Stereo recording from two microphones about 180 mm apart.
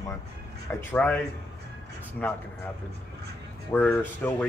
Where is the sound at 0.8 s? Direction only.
10° left (ahead or behind).